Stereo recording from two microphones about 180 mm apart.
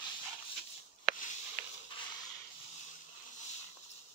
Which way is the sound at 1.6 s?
50° right (ahead or behind).